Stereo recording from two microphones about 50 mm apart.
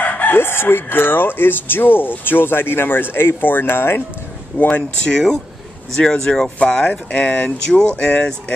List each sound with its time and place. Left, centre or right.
0.0 s speech: left
5.1 s speech: centre
6.9 s speech: left